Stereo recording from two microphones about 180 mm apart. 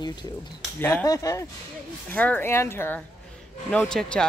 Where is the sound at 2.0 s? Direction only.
10° left (ahead or behind).